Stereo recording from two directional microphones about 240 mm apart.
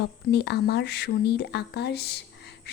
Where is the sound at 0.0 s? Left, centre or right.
Left.